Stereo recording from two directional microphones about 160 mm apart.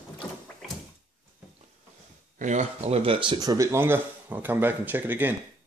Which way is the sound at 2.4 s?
45° right (ahead or behind).